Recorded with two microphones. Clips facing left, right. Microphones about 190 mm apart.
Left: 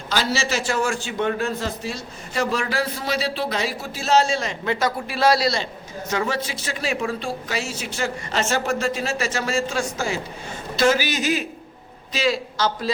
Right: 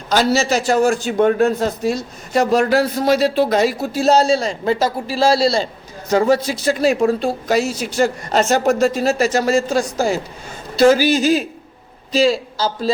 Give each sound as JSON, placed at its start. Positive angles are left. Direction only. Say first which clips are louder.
{"t": 0.1, "sound": "a man's voice", "louder": "right 8 dB", "side_deg": -45}